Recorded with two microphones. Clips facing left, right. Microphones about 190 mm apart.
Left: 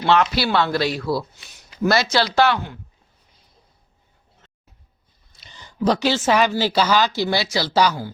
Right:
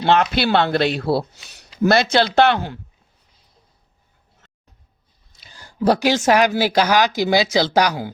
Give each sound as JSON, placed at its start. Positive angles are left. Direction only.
{"t": 0.1, "sound": "speech", "side_deg": -55}
{"t": 5.4, "sound": "speech", "side_deg": -10}